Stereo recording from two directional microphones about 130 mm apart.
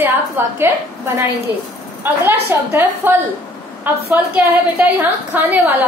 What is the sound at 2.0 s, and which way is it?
A woman's voice, 15° right (ahead or behind).